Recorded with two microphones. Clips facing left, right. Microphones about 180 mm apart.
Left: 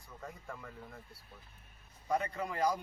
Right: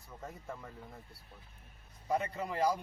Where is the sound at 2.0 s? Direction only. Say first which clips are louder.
Even; 25° right (ahead or behind).